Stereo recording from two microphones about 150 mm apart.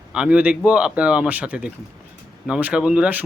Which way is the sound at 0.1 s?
5° right (ahead or behind).